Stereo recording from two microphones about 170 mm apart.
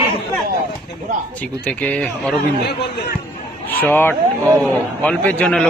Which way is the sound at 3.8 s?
10° left (ahead or behind).